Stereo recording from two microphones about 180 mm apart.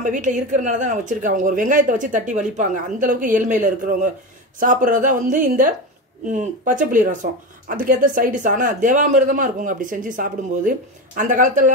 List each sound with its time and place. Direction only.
0.0 s a woman's voice: 45° right (ahead or behind)